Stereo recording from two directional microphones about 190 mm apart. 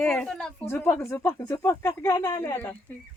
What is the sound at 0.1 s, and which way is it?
A woman's voice, 5° left (ahead or behind).